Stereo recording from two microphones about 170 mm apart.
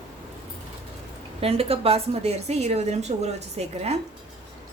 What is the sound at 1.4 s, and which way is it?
A woman's voice, 35° right (ahead or behind).